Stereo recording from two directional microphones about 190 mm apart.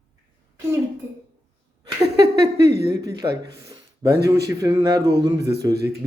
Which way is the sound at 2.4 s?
20° right (ahead or behind).